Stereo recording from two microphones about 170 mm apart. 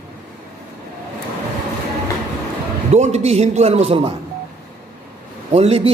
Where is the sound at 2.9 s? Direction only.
40° right (ahead or behind).